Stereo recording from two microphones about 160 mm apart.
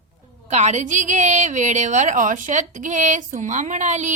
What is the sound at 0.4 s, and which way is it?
A woman's voice, 45° right (ahead or behind).